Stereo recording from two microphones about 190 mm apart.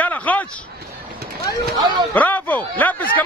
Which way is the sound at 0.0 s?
10° left (ahead or behind).